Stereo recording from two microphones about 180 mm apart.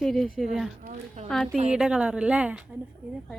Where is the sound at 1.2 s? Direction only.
5° left (ahead or behind).